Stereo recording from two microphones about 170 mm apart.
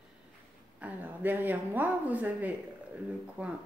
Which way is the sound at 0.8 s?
10° right (ahead or behind).